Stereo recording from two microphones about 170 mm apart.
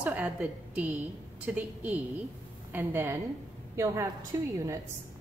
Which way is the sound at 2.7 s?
10° right (ahead or behind).